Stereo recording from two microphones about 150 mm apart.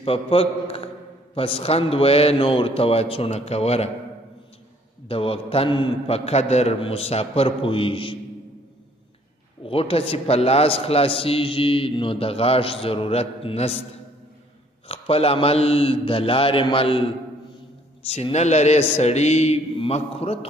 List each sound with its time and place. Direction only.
0.0 s a man's voice: 40° left (ahead or behind)
5.0 s a man's voice: 40° left (ahead or behind)
9.6 s a man's voice: 35° left (ahead or behind)
14.9 s a man's voice: 40° left (ahead or behind)
18.0 s a man's voice: 40° left (ahead or behind)